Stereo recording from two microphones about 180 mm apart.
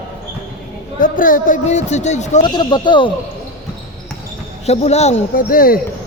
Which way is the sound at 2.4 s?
25° left (ahead or behind).